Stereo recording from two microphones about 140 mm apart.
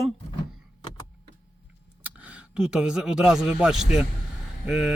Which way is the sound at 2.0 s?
5° right (ahead or behind).